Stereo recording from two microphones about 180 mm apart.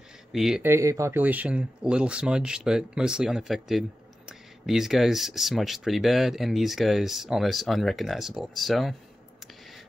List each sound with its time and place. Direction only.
0.3 s speech: centre (ahead or behind)
0.7 s speech: 15° right (ahead or behind); by 8.9 s centre (ahead or behind)